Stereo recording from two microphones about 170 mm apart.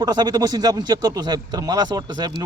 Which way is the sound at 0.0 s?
25° right (ahead or behind).